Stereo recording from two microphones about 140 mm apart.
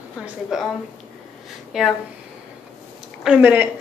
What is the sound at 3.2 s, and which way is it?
Speech, 10° right (ahead or behind).